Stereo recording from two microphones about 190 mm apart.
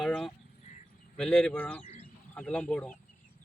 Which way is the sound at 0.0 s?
Centre (ahead or behind).